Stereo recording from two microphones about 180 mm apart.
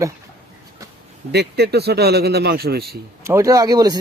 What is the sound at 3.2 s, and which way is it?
Speech, 15° right (ahead or behind).